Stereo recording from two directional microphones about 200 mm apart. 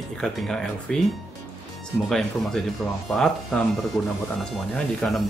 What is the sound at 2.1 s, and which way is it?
Speech, 5° left (ahead or behind).